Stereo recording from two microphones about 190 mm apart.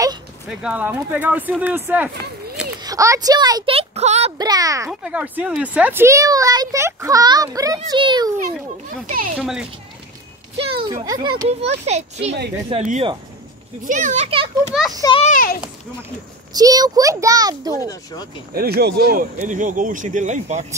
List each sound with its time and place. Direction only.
0.6 s speech: 5° right (ahead or behind); by 4.3 s 35° right (ahead or behind)
4.4 s speech: 20° right (ahead or behind)
9.0 s speech: 45° right (ahead or behind)
9.4 s speech: 5° right (ahead or behind)
11.1 s a child's voice: 20° right (ahead or behind)
13.8 s a child's voice: 40° right (ahead or behind)
14.7 s speech: centre (ahead or behind)
15.0 s a child's voice: 25° left (ahead or behind)
15.2 s a child's voice: 45° left (ahead or behind)
16.5 s speech: 20° right (ahead or behind)
18.5 s speech: 55° right (ahead or behind)
19.3 s a child's voice: 40° right (ahead or behind)